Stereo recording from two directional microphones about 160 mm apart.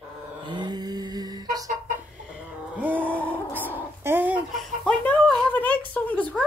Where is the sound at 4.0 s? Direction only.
15° right (ahead or behind).